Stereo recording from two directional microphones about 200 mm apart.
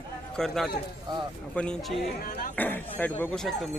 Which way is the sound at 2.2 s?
45° left (ahead or behind).